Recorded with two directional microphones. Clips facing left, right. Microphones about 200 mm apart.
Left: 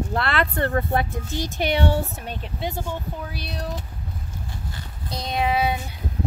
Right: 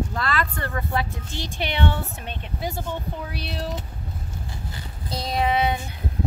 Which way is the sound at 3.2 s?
Centre (ahead or behind).